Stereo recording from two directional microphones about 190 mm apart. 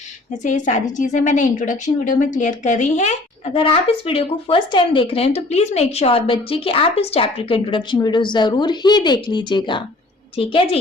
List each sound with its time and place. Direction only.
0.4 s a woman's voice: 40° left (ahead or behind)